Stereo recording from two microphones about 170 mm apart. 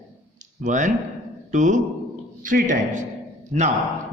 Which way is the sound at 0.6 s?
45° right (ahead or behind).